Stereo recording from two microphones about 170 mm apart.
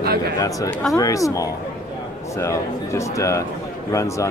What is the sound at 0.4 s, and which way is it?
A man's voice, 20° left (ahead or behind).